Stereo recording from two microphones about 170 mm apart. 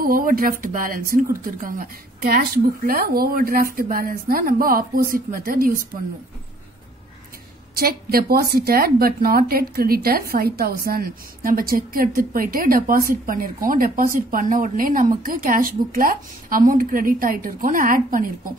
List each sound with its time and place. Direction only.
0.0 s a woman's voice: 55° right (ahead or behind)
7.7 s a woman's voice: 65° right (ahead or behind)